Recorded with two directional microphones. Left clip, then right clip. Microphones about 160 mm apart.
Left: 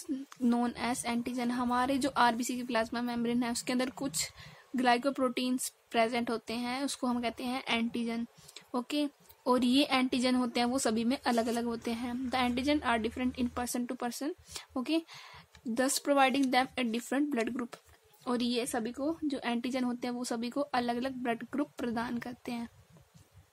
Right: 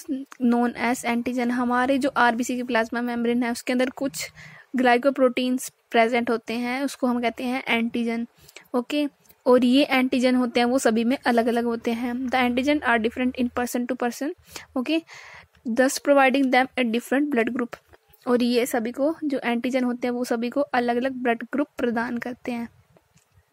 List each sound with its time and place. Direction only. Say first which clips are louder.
0.5 s a woman's voice: right 9 dB; 35° right (ahead or behind); by 19.1 s 50° right (ahead or behind)
19.1 s a woman's voice: right 9 dB; 35° right (ahead or behind)